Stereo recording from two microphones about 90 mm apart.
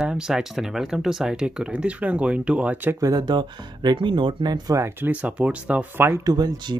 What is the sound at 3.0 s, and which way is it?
Speech, 45° right (ahead or behind).